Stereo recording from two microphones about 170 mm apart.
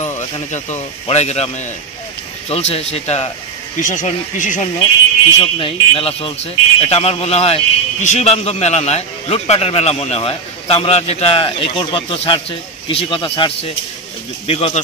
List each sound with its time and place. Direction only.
0.0 s snake: 40° left (ahead or behind)
1.0 s speech: 40° left (ahead or behind)
2.5 s speech: 40° left (ahead or behind)
5.4 s speech: 30° left (ahead or behind)